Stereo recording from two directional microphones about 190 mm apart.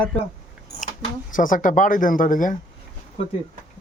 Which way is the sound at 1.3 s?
45° left (ahead or behind).